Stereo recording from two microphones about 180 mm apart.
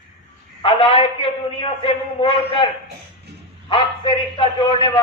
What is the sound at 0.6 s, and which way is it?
A man's voice, 30° left (ahead or behind).